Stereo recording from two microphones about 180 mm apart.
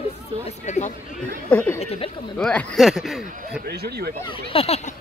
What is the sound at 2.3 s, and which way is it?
Speech, 5° left (ahead or behind).